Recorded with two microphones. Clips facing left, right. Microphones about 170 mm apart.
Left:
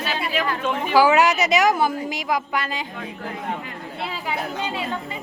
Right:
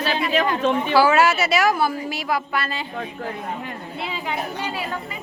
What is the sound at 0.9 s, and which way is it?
A woman's voice, 15° left (ahead or behind).